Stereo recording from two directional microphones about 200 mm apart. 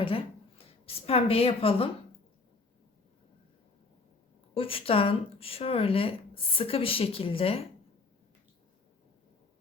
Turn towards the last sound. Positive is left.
turn(degrees=30)  # may be behind; listen again after turning